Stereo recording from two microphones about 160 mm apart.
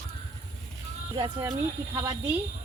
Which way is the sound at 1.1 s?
25° right (ahead or behind).